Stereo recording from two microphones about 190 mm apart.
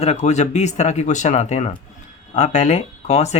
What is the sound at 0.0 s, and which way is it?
Speech, 35° left (ahead or behind).